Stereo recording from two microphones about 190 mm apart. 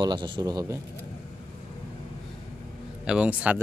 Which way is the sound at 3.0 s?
5° right (ahead or behind).